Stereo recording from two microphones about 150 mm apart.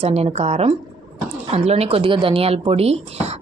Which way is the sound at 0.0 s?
45° right (ahead or behind).